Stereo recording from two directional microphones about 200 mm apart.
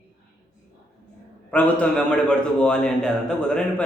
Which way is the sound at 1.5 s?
5° left (ahead or behind).